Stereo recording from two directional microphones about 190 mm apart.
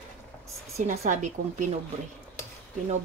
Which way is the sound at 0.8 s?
40° right (ahead or behind).